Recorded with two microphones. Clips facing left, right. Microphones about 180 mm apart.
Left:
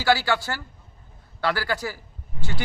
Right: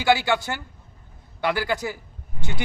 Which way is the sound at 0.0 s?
20° right (ahead or behind).